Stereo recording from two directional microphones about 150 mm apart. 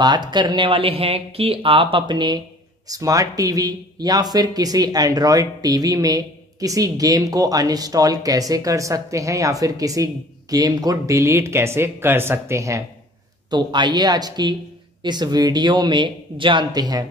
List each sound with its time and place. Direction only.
0.0 s speech: 30° right (ahead or behind)
13.5 s speech: 30° right (ahead or behind)